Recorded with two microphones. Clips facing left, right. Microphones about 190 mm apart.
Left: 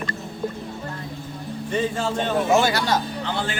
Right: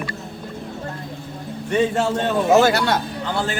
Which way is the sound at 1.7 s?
75° right (ahead or behind).